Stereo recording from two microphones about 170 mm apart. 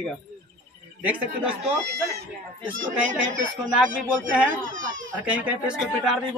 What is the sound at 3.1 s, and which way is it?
Speech, 50° right (ahead or behind).